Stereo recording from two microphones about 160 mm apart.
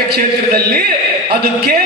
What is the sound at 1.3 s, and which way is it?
Speech, 85° right.